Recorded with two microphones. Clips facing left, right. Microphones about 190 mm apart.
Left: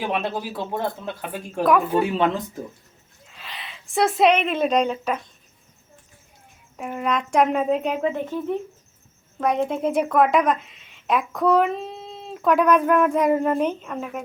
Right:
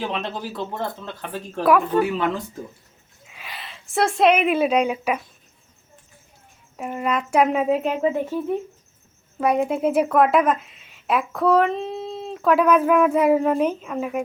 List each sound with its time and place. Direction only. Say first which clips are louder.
0.0 s speech: left 2 dB; 10° left (ahead or behind)
2.0 s speech: even; 25° left (ahead or behind)
3.2 s a sound: right 1 dB; 10° right (ahead or behind)
3.6 s speech: left 1 dB; centre (ahead or behind)
6.7 s a woman's voice: right 1 dB; 5° right (ahead or behind)